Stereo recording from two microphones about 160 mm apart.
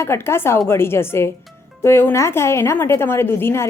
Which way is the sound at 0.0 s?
15° left (ahead or behind).